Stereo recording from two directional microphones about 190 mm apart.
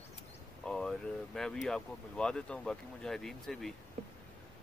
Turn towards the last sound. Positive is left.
turn(degrees=0)  # may be behind; listen again after turning